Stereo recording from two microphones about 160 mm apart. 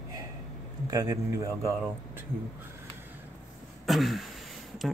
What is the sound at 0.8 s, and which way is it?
Speech, 25° right (ahead or behind).